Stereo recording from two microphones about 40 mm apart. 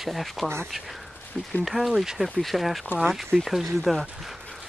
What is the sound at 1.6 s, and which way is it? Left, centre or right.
Speech, centre.